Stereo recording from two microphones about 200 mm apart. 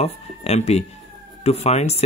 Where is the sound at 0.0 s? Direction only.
30° left (ahead or behind).